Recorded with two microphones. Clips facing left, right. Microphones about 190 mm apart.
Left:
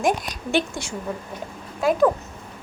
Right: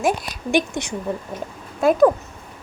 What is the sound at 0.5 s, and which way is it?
Speech, 20° right (ahead or behind).